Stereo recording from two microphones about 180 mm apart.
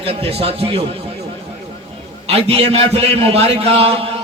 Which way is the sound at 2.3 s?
35° right (ahead or behind).